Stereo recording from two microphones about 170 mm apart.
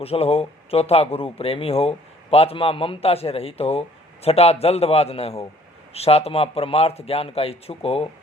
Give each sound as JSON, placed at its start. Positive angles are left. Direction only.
{"t": 0.0, "sound": "speech", "side_deg": 35}